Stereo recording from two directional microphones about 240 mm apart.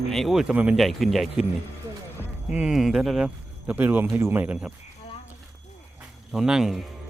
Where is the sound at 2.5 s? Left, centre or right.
Centre.